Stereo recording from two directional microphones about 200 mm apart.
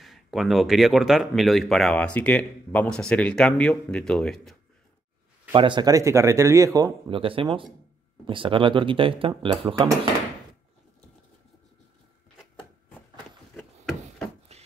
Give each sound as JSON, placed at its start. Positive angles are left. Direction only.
{"t": 0.0, "sound": "speech", "side_deg": 0}
{"t": 5.5, "sound": "speech", "side_deg": -25}
{"t": 14.5, "sound": "a sound", "side_deg": -30}